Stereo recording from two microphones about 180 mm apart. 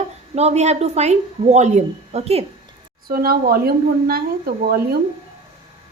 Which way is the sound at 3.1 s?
55° right (ahead or behind).